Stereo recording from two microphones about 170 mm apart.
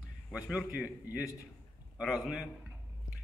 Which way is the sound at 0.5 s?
5° right (ahead or behind).